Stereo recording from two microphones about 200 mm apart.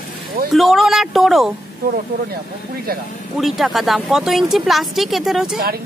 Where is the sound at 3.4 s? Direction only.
Centre (ahead or behind).